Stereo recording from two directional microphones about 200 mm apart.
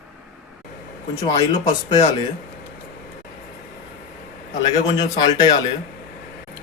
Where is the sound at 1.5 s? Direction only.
20° left (ahead or behind).